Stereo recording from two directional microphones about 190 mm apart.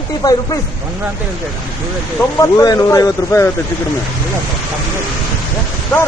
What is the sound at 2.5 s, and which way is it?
Speech, 20° left (ahead or behind).